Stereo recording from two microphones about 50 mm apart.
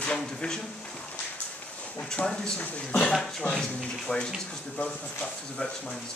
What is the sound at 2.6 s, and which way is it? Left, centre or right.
Speech, left.